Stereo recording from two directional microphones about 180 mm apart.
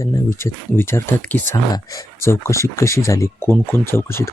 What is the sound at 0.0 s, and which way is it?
Speech, 15° left (ahead or behind).